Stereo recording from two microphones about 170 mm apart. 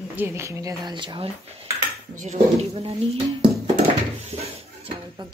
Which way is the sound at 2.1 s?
40° right (ahead or behind).